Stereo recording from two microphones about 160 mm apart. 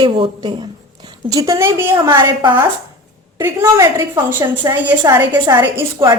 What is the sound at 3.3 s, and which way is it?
A woman's voice, 15° right (ahead or behind).